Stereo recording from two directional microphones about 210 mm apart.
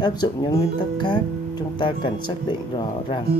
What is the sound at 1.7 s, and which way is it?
Speech, 20° left (ahead or behind).